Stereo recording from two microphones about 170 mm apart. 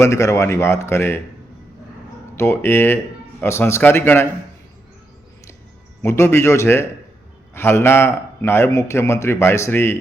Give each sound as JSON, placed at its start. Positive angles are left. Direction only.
{"t": 0.0, "sound": "a man's voice", "side_deg": 20}
{"t": 2.3, "sound": "a man's voice", "side_deg": 15}
{"t": 6.0, "sound": "a man's voice", "side_deg": 15}